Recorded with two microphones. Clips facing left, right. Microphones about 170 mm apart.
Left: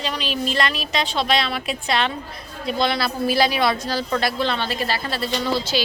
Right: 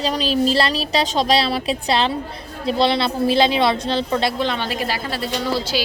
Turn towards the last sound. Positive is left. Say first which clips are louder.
# right 1 dB
turn(degrees=-10)  # may be behind; listen again after turning